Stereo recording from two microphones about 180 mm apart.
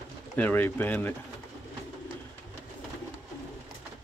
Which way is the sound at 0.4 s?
10° left (ahead or behind).